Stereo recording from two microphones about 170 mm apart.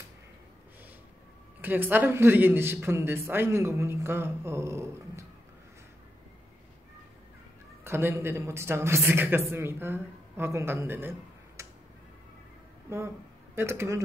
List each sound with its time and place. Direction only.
1.6 s speech: 10° right (ahead or behind)
7.8 s speech: 15° right (ahead or behind)
13.6 s speech: 15° right (ahead or behind)